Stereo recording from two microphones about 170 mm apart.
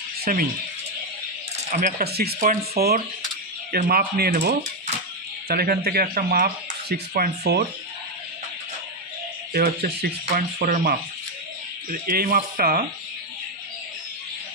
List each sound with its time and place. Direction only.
0.2 s speech: 55° right (ahead or behind)
1.7 s speech: 50° right (ahead or behind); by 7.6 s 70° right (ahead or behind)
9.5 s speech: 70° right (ahead or behind)
12.1 s speech: 55° right (ahead or behind)